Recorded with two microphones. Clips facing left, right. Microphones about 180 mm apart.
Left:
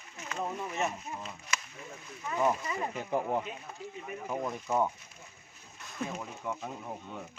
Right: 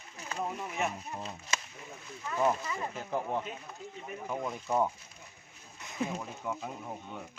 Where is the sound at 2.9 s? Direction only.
Centre (ahead or behind).